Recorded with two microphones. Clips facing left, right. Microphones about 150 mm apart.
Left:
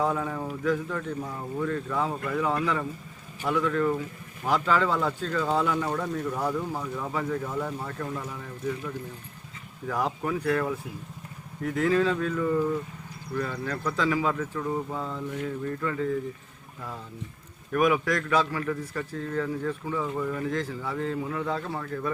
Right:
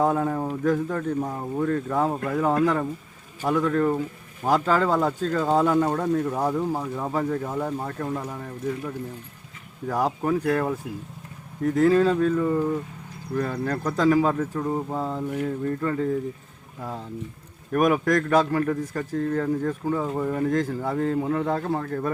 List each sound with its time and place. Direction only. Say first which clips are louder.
0.0 s a man's voice: right 5 dB; 40° right (ahead or behind)
6.2 s speech: right 4 dB; 30° right (ahead or behind)
7.0 s speech: right 3 dB; 40° right (ahead or behind)
9.8 s speech: right 4 dB; 35° right (ahead or behind)
13.3 s speech: right 5 dB; 45° right (ahead or behind); by 14.9 s 25° right (ahead or behind)
14.9 s speech: right 5 dB; 35° right (ahead or behind)
17.7 s a man's voice: right 3 dB; 45° right (ahead or behind)